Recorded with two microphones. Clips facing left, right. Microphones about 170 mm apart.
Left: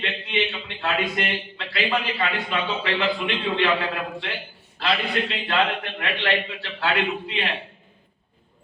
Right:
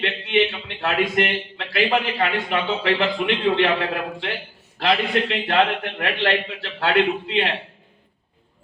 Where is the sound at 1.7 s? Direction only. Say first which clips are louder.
Right 4 dB; 55° right (ahead or behind).